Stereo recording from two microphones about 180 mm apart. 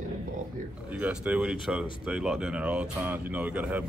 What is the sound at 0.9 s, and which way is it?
Speech, 5° right (ahead or behind).